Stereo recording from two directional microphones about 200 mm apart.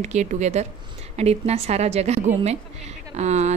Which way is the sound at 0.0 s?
35° right (ahead or behind).